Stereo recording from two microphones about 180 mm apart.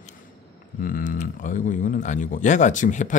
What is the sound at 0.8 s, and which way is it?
Speech, 50° left (ahead or behind).